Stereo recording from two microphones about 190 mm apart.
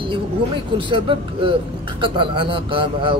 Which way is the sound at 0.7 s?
25° right (ahead or behind).